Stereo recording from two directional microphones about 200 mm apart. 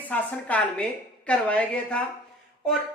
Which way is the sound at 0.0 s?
5° left (ahead or behind).